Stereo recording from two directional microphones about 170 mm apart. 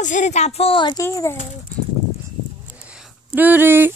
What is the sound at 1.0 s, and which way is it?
Speech, 15° left (ahead or behind).